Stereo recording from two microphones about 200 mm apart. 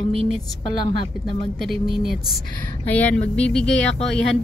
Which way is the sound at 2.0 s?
Centre (ahead or behind).